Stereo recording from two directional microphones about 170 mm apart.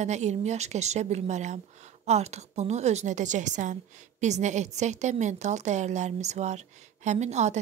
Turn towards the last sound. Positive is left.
turn(degrees=-40)  # may be behind; listen again after turning